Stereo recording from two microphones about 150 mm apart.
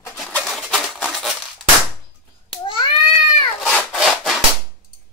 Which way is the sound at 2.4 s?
35° left (ahead or behind).